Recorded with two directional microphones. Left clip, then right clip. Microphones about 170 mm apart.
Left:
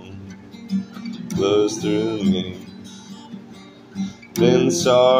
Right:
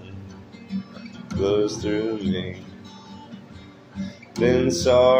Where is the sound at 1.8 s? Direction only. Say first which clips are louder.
Left 3 dB; 35° right (ahead or behind).